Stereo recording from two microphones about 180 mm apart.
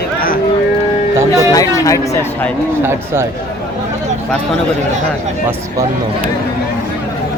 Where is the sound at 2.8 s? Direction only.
15° right (ahead or behind).